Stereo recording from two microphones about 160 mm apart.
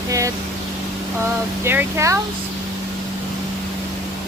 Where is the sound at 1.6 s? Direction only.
15° right (ahead or behind).